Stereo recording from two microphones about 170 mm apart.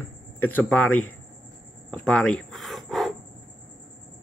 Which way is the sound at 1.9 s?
5° left (ahead or behind).